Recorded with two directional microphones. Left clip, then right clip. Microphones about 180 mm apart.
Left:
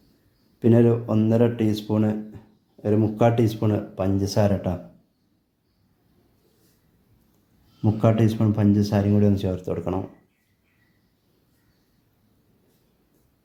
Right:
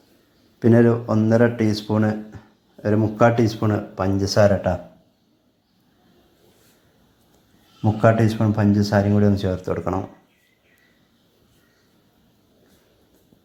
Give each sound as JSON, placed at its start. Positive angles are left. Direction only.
{"t": 0.6, "sound": "speech", "side_deg": 0}
{"t": 7.8, "sound": "speech", "side_deg": 0}